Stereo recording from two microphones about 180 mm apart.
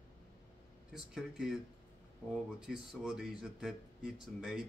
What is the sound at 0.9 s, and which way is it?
Speech, centre (ahead or behind).